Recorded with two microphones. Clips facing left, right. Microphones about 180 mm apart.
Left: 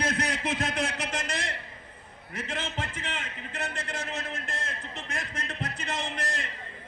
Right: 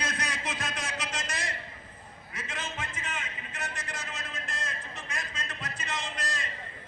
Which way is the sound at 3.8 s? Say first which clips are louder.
Left 5 dB; 60° left (ahead or behind).